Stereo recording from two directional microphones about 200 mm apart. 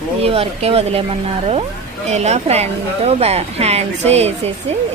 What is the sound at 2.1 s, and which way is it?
A woman's voice, 35° right (ahead or behind).